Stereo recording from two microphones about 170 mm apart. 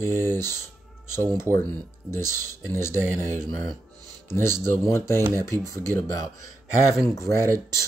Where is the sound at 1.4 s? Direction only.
15° left (ahead or behind).